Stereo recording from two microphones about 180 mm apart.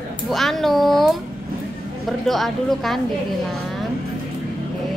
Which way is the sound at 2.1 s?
Centre (ahead or behind).